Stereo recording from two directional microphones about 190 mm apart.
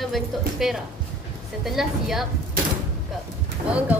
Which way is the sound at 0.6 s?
Centre (ahead or behind).